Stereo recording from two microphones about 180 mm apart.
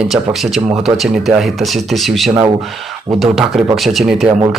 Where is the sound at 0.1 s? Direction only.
Centre (ahead or behind).